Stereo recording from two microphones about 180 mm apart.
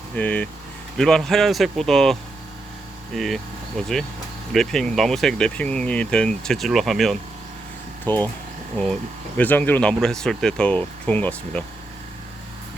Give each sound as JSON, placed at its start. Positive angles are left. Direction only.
{"t": 0.2, "sound": "speech", "side_deg": 5}
{"t": 3.2, "sound": "speech", "side_deg": 0}
{"t": 8.0, "sound": "speech", "side_deg": 10}
{"t": 9.4, "sound": "speech", "side_deg": 10}